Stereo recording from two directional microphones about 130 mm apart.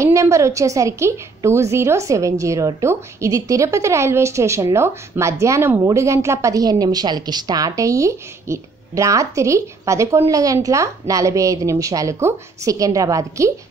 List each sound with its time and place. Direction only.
0.0 s a woman's voice: 25° right (ahead or behind)